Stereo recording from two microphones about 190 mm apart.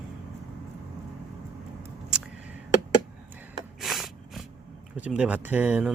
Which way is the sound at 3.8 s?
Centre (ahead or behind).